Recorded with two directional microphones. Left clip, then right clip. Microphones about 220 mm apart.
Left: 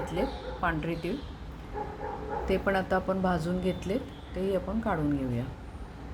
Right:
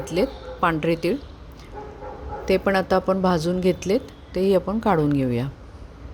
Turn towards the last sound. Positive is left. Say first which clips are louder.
# right 9 dB
turn(degrees=-45)  # may be behind; listen again after turning